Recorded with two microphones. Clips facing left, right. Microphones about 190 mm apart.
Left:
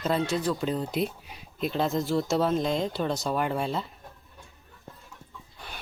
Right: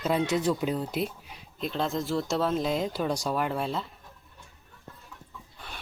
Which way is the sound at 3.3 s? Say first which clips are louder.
Left 1 dB; centre (ahead or behind).